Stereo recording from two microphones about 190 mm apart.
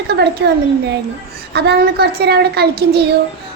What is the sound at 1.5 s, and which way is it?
A woman's voice, 60° right (ahead or behind).